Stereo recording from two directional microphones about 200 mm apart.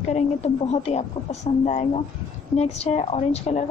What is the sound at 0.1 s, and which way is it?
A woman's voice, 30° left (ahead or behind).